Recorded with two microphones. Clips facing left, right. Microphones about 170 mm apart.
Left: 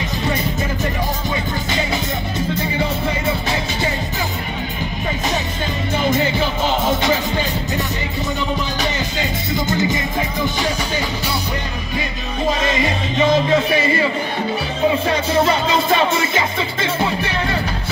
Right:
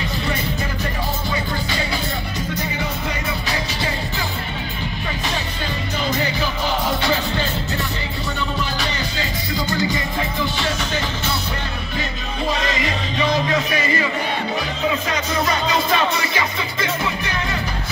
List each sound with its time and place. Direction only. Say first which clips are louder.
9.5 s music: left 3 dB; 20° left (ahead or behind)
12.8 s music: left 4 dB; 25° left (ahead or behind)
15.0 s music: left 5 dB; 30° left (ahead or behind)